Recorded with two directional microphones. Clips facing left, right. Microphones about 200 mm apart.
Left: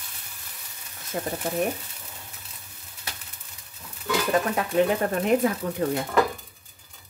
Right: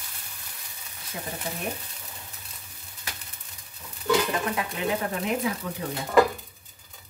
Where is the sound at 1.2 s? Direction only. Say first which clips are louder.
Left 7 dB; 50° left (ahead or behind).